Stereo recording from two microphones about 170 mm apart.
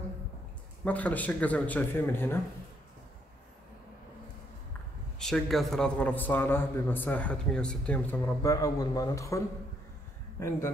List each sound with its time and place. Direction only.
0.8 s a man's voice: 10° left (ahead or behind)
5.2 s a man's voice: centre (ahead or behind)
8.4 s a man's voice: 20° left (ahead or behind)